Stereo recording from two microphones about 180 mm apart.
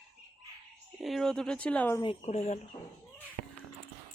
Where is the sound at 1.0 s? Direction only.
Centre (ahead or behind).